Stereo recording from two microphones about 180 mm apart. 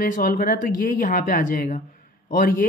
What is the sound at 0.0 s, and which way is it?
A man's voice, 50° left (ahead or behind).